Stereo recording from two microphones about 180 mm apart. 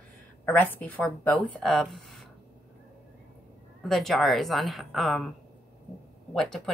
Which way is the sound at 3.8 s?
Centre (ahead or behind).